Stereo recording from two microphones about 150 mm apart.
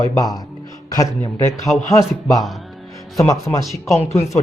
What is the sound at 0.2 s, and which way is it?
Speech, 25° left (ahead or behind).